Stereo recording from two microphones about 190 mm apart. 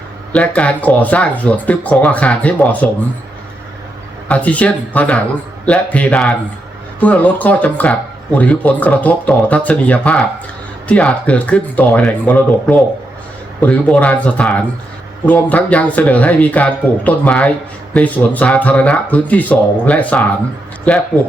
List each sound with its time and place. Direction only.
0.3 s speech: 5° left (ahead or behind)
4.3 s speech: 5° left (ahead or behind)